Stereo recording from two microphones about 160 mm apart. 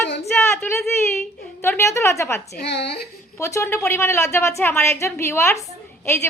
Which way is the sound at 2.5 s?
90° left.